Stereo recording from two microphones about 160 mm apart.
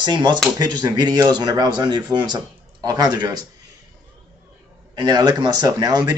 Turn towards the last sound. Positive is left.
turn(degrees=-25)  # may be behind; listen again after turning